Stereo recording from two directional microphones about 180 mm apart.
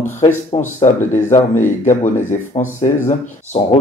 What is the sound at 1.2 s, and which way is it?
Speech, 15° left (ahead or behind).